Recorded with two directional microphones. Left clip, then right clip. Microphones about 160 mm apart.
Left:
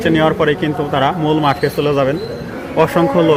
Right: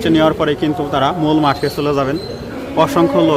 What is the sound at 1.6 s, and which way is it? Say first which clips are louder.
Speech: left 2 dB; centre (ahead or behind).